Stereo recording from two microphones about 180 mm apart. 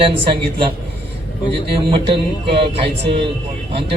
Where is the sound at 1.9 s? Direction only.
30° right (ahead or behind).